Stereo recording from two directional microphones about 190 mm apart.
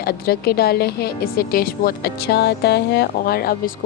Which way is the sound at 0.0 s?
55° left (ahead or behind).